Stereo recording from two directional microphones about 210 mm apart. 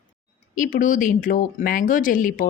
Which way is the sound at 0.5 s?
40° left (ahead or behind).